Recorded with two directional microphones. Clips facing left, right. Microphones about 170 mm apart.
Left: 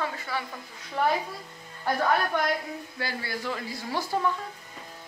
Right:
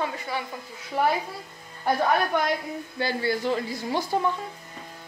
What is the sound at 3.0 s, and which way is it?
Speech, 25° right (ahead or behind).